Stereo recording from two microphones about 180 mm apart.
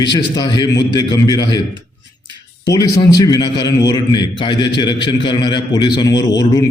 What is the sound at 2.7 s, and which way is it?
A man's voice, 20° left (ahead or behind).